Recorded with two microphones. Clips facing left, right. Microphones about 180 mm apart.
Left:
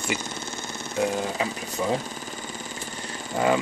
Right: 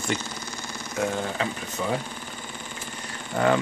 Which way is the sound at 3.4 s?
15° left (ahead or behind).